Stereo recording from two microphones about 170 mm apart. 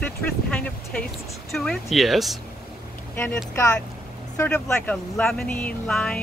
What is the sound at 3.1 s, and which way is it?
Speech, 10° left (ahead or behind).